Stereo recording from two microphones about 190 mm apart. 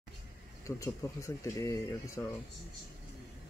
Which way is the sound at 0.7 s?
15° left (ahead or behind).